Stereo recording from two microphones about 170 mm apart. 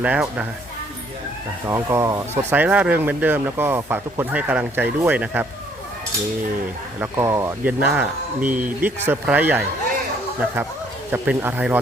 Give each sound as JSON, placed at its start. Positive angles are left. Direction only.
{"t": 0.0, "sound": "speech", "side_deg": -5}
{"t": 1.6, "sound": "speech", "side_deg": -15}
{"t": 7.0, "sound": "speech", "side_deg": -15}